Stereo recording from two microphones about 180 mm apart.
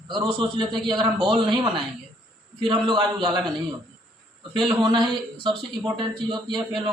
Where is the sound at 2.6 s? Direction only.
25° right (ahead or behind).